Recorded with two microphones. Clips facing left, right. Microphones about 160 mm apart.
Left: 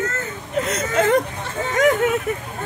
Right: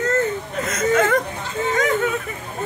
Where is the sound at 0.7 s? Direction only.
35° left (ahead or behind).